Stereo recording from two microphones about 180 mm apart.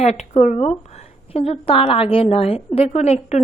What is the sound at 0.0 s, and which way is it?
A woman's voice, 40° left (ahead or behind).